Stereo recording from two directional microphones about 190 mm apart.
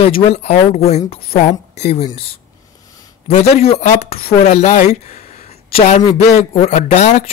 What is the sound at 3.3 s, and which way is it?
Speech, 35° left (ahead or behind).